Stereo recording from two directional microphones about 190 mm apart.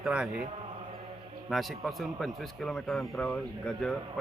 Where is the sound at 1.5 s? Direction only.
Centre (ahead or behind).